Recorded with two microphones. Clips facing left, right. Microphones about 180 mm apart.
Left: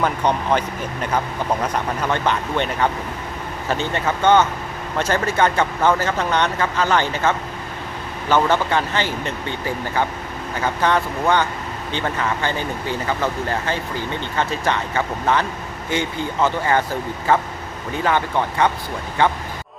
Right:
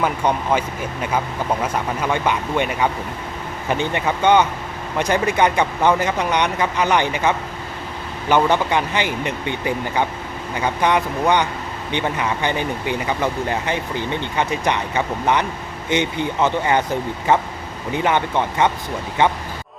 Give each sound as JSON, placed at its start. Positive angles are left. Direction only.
{"t": 0.0, "sound": "speech", "side_deg": -10}
{"t": 1.6, "sound": "speech", "side_deg": -10}